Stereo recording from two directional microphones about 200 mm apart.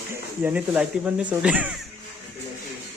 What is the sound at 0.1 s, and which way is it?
Speech, 10° right (ahead or behind).